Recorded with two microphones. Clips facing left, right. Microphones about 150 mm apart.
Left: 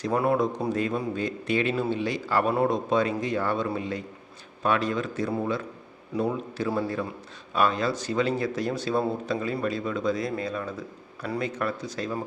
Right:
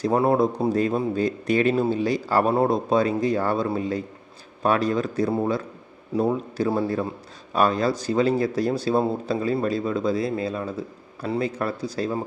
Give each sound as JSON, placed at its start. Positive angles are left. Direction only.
{"t": 0.0, "sound": "speech", "side_deg": -30}